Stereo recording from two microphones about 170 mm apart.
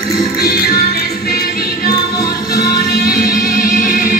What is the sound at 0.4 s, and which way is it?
Music, 65° left (ahead or behind).